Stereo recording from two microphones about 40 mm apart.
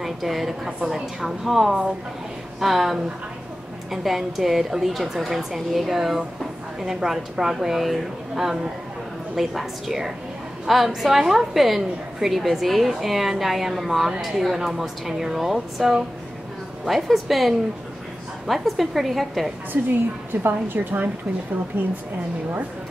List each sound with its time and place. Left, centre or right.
0.0 s a woman's voice: centre
20.4 s a woman's voice: right
21.7 s speech: right